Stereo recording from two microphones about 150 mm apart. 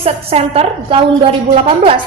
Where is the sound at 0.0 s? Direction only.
40° right (ahead or behind).